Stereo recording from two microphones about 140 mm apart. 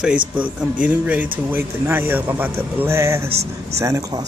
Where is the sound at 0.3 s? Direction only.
10° right (ahead or behind).